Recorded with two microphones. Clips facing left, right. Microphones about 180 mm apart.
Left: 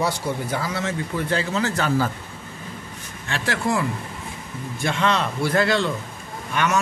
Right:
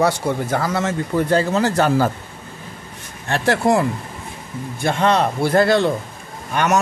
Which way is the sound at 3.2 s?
50° right (ahead or behind).